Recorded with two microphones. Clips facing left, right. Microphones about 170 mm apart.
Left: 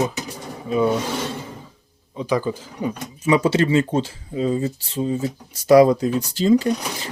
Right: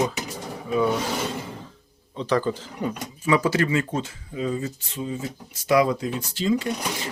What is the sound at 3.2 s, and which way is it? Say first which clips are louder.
Speech: left 4 dB; 25° left (ahead or behind).